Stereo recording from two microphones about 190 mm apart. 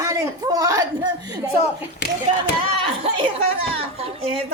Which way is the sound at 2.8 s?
25° right (ahead or behind).